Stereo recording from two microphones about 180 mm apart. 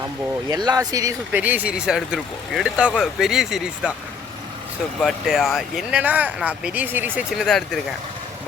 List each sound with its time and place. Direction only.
0.5 s speech: 20° right (ahead or behind)
1.3 s speech: 10° right (ahead or behind)
5.0 s speech: centre (ahead or behind)